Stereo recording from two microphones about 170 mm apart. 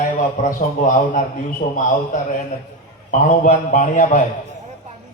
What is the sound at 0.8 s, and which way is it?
A man's voice, 45° left (ahead or behind).